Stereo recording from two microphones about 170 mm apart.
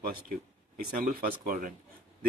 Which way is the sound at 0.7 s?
55° right (ahead or behind).